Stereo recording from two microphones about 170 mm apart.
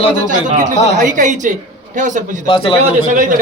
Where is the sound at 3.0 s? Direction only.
50° right (ahead or behind).